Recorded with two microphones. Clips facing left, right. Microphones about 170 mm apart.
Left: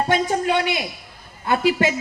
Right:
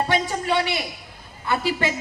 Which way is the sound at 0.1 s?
50° left (ahead or behind).